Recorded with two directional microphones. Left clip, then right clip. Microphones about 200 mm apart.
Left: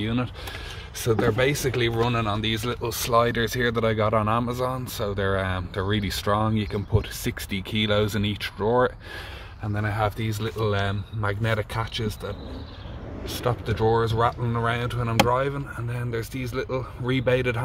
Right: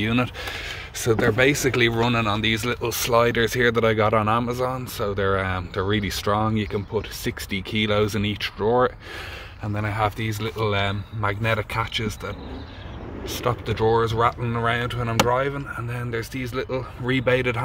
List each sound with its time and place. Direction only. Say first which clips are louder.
0.0 s speech: right 5 dB; 20° right (ahead or behind); by 17.6 s centre (ahead or behind)